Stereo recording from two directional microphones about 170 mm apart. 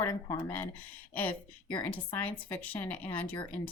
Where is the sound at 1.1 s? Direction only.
10° left (ahead or behind).